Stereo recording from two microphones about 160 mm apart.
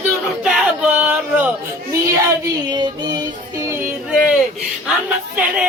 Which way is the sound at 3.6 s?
15° right (ahead or behind).